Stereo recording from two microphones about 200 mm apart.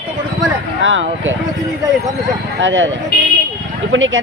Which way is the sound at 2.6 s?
70° right (ahead or behind).